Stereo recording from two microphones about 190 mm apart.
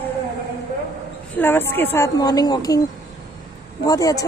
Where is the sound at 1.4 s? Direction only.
10° left (ahead or behind).